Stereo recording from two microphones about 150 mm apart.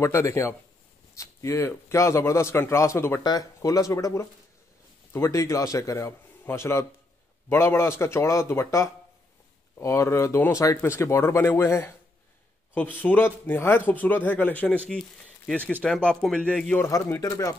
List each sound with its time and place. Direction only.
0.0 s a man's voice: 20° left (ahead or behind)